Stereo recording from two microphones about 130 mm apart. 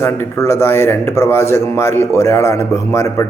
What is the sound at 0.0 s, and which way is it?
Speech, 20° left (ahead or behind).